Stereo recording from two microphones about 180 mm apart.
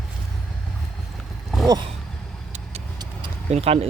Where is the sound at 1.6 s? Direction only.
20° right (ahead or behind).